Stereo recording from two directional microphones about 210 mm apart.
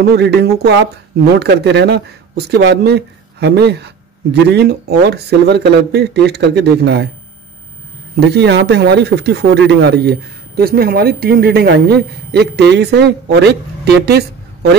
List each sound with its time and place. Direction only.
0.0 s speech: 50° right (ahead or behind)
8.2 s speech: 55° right (ahead or behind)